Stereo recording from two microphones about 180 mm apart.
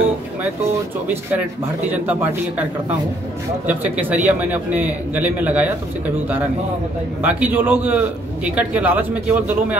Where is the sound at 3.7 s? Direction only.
10° right (ahead or behind).